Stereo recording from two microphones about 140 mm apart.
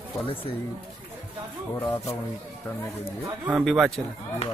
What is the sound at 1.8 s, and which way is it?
Speech, 15° left (ahead or behind).